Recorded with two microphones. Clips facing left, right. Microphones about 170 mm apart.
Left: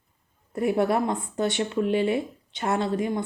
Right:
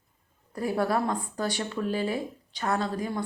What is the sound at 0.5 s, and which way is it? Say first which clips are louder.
Speech: left 4 dB; 25° left (ahead or behind).